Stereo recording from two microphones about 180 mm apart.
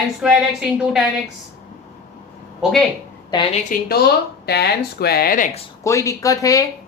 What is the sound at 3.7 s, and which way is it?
Speech, 60° left (ahead or behind).